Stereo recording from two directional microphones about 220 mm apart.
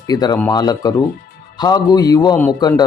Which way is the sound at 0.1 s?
15° left (ahead or behind).